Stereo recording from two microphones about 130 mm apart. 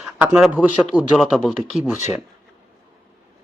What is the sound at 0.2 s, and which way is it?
A man's voice, 5° right (ahead or behind).